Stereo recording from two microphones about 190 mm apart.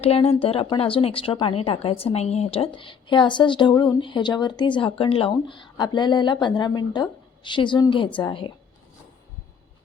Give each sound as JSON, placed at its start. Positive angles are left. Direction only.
{"t": 0.0, "sound": "a woman's voice", "side_deg": 30}